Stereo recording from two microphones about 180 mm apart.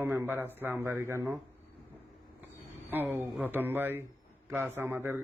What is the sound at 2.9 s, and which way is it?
A man's voice, 10° right (ahead or behind).